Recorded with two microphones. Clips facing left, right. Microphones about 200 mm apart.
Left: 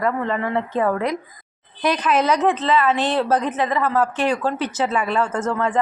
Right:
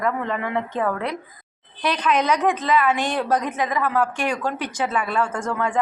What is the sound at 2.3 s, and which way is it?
A woman's voice, 15° right (ahead or behind).